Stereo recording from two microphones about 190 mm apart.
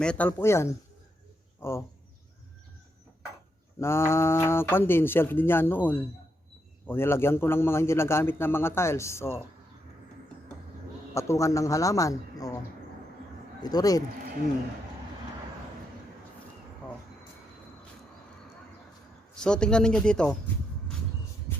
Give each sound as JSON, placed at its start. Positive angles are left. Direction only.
{"t": 0.0, "sound": "a man's voice", "side_deg": 5}
{"t": 3.8, "sound": "a man's voice", "side_deg": 15}
{"t": 11.1, "sound": "a man's voice", "side_deg": 15}
{"t": 13.6, "sound": "speech", "side_deg": 20}
{"t": 19.4, "sound": "speech", "side_deg": 5}